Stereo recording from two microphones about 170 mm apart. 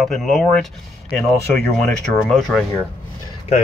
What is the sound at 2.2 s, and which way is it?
Speech, centre (ahead or behind).